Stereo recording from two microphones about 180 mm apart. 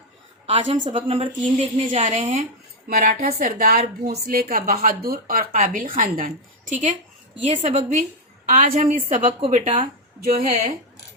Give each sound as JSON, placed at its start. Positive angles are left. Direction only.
{"t": 0.4, "sound": "a woman's voice", "side_deg": -30}
{"t": 4.0, "sound": "a woman's voice", "side_deg": -60}
{"t": 9.2, "sound": "a woman's voice", "side_deg": -35}